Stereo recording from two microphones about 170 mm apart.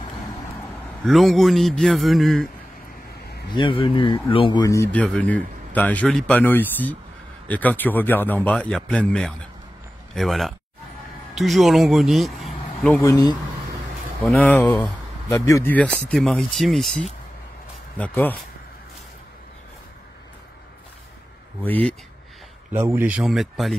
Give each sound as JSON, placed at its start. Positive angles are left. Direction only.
{"t": 1.0, "sound": "a man's voice", "side_deg": 0}
{"t": 3.5, "sound": "speech", "side_deg": 30}
{"t": 4.9, "sound": "a man's voice", "side_deg": 5}
{"t": 12.9, "sound": "speech", "side_deg": 20}
{"t": 14.2, "sound": "speech", "side_deg": 5}
{"t": 21.6, "sound": "speech", "side_deg": 10}
{"t": 22.7, "sound": "a man's voice", "side_deg": -15}